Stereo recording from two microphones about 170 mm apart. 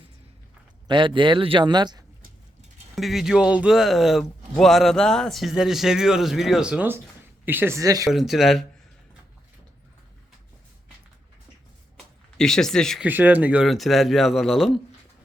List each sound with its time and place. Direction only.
0.9 s a man's voice: 30° right (ahead or behind)
2.9 s speech: centre (ahead or behind); by 8.1 s 20° right (ahead or behind)
8.1 s speech: centre (ahead or behind)
11.9 s a sound: 5° left (ahead or behind)
13.1 s speech: 10° right (ahead or behind)